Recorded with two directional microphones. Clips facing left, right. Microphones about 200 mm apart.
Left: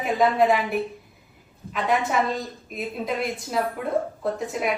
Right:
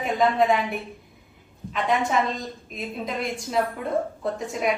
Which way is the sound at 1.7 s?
5° left (ahead or behind).